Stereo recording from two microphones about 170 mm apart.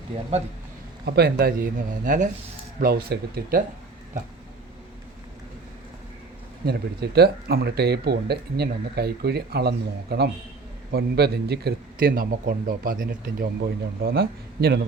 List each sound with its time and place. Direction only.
1.0 s a man's voice: 70° right (ahead or behind); by 2.3 s 50° right (ahead or behind)
2.8 s a man's voice: 65° right (ahead or behind)
6.7 s a man's voice: 70° right (ahead or behind)